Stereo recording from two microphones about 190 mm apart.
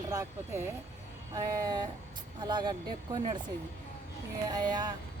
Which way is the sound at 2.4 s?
25° right (ahead or behind).